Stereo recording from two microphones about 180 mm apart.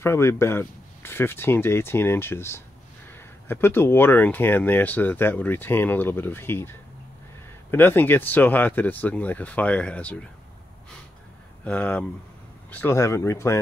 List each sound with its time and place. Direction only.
0.0 s speech: 15° left (ahead or behind)
11.6 s speech: 5° left (ahead or behind)